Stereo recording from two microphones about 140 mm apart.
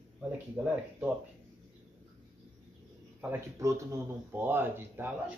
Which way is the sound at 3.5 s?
20° right (ahead or behind).